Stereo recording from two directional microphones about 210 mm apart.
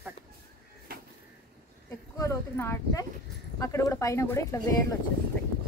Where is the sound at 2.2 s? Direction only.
15° left (ahead or behind).